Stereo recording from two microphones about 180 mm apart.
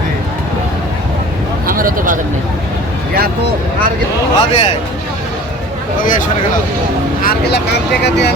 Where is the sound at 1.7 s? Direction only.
50° right (ahead or behind).